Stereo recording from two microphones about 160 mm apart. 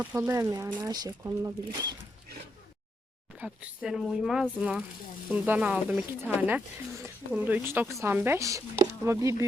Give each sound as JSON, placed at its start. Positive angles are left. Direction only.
{"t": 0.0, "sound": "speech", "side_deg": -15}
{"t": 3.3, "sound": "speech", "side_deg": -10}